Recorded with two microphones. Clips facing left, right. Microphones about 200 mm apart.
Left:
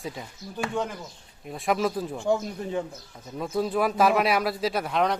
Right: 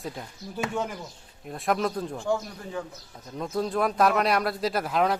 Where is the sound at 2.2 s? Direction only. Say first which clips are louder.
Left 5 dB; 20° left (ahead or behind).